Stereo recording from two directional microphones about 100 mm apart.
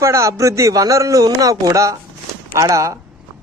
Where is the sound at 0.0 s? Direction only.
30° right (ahead or behind).